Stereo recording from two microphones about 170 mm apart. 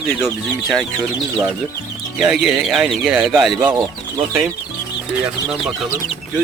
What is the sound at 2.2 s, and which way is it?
Speech, centre (ahead or behind).